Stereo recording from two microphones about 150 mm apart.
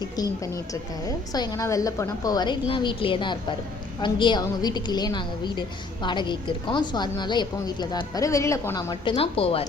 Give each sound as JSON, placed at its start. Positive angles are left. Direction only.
{"t": 0.0, "sound": "a woman's voice", "side_deg": 25}
{"t": 9.1, "sound": "speech", "side_deg": 40}